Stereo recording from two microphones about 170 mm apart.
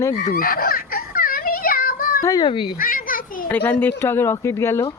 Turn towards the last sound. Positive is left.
turn(degrees=15)  # may be behind; listen again after turning